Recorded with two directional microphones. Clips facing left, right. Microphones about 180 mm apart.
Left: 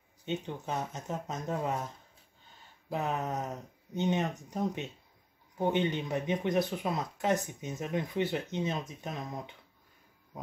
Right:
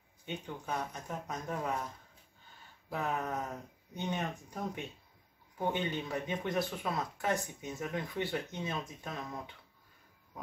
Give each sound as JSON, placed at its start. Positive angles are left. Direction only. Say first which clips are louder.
{"t": 0.2, "sound": "speech", "louder": "left 6 dB", "side_deg": 25}
{"t": 2.9, "sound": "speech", "louder": "left 2 dB", "side_deg": 20}